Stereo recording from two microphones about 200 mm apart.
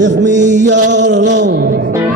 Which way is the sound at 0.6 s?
65° right (ahead or behind).